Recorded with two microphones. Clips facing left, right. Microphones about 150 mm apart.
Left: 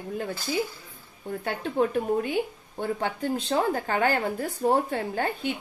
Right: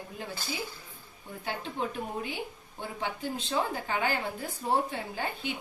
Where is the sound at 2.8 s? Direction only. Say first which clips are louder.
Left 7 dB; 45° left (ahead or behind).